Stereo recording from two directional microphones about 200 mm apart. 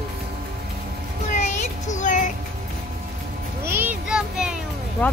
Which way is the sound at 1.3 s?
35° left (ahead or behind).